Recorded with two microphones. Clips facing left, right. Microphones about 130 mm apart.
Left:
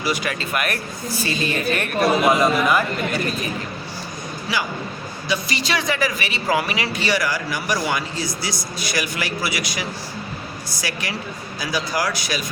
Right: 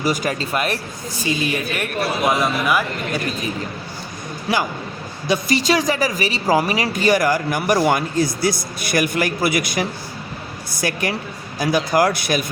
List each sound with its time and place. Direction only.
0.0 s speech: 45° right (ahead or behind)
1.2 s a man's voice: 15° right (ahead or behind)
4.5 s a man's voice: 55° right (ahead or behind)
5.3 s speech: 40° right (ahead or behind)